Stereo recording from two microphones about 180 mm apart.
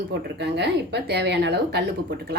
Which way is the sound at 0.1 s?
70° right (ahead or behind).